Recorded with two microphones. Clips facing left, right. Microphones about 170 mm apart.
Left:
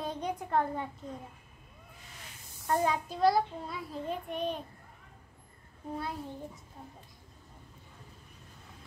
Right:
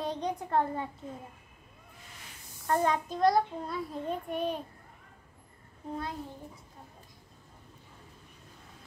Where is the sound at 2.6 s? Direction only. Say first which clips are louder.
Right 1 dB; 10° left (ahead or behind).